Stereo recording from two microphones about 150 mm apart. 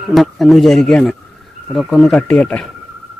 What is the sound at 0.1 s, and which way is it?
Speech, centre (ahead or behind).